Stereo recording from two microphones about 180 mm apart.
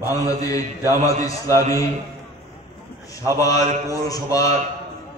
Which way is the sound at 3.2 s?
20° left (ahead or behind).